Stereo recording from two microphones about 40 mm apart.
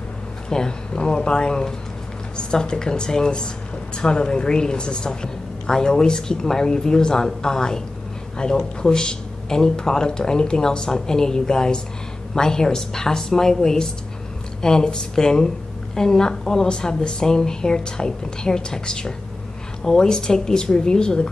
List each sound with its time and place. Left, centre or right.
0.5 s a woman's voice: centre